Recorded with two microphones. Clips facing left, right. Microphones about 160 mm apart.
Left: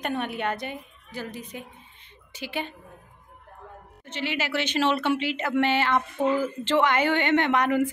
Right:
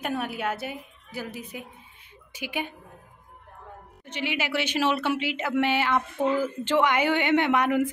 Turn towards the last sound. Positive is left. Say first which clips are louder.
# even
turn(degrees=-10)  # may be behind; listen again after turning